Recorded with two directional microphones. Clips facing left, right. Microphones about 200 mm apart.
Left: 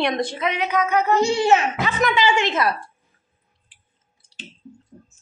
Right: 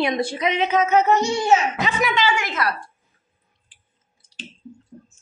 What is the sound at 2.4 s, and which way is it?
Speech, 25° left (ahead or behind).